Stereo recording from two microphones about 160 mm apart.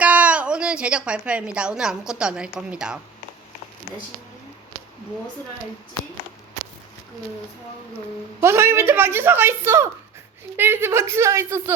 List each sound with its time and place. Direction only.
0.0 s a woman's voice: 10° right (ahead or behind)
8.4 s a woman's voice: 15° right (ahead or behind)